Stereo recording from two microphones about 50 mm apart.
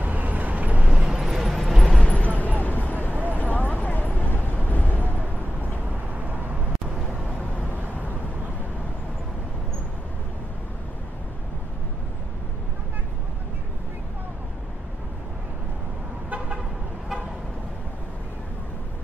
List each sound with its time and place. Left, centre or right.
0.0 s vehicle: right
0.8 s vehicle: centre
1.4 s a sound: centre
2.0 s vehicle: left
2.4 s vehicle: left
6.1 s vehicle: right